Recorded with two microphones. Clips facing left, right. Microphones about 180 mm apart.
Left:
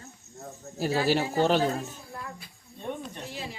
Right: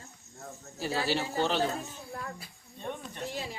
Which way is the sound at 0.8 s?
45° left (ahead or behind).